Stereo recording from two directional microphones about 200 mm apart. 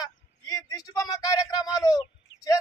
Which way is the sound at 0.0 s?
20° left (ahead or behind).